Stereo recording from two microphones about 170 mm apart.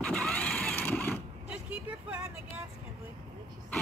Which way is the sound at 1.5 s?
10° right (ahead or behind).